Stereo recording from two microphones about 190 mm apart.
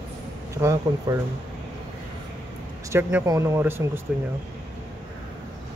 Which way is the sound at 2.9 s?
15° right (ahead or behind).